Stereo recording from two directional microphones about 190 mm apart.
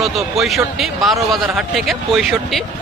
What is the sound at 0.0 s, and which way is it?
Speech, centre (ahead or behind).